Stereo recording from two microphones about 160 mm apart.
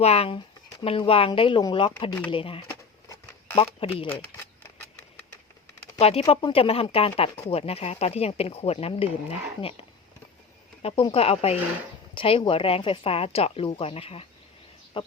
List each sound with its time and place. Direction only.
0.0 s speech: 40° left (ahead or behind)
2.6 s a sound: 20° left (ahead or behind)
3.6 s speech: 35° left (ahead or behind)
6.0 s speech: 40° left (ahead or behind)
10.8 s speech: 35° left (ahead or behind)